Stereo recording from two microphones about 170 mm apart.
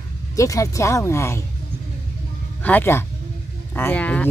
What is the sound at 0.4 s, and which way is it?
Speech, 20° left (ahead or behind).